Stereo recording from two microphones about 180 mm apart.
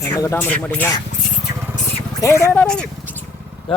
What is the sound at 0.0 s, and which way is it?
Speech, 15° left (ahead or behind).